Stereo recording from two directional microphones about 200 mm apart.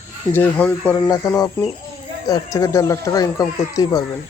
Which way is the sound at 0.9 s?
20° left (ahead or behind).